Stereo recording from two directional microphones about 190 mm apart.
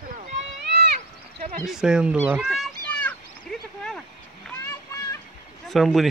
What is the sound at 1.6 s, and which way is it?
Cat, 5° right (ahead or behind).